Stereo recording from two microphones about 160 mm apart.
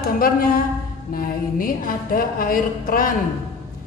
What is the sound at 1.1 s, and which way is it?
Speech, 60° left (ahead or behind).